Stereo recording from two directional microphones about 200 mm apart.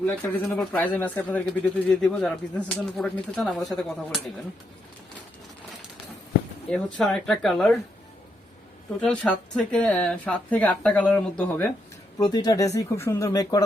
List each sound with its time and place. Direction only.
0.0 s speech: 10° left (ahead or behind)
6.7 s speech: centre (ahead or behind)
9.0 s speech: 5° left (ahead or behind)
12.2 s speech: 20° left (ahead or behind)